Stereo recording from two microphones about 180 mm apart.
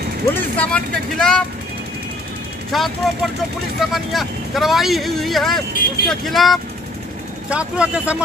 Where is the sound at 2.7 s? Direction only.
Centre (ahead or behind).